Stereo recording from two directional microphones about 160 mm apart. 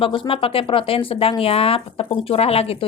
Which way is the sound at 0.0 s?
35° left (ahead or behind).